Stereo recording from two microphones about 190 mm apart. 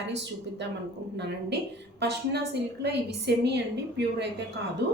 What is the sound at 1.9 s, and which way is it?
A woman's voice, 60° right (ahead or behind).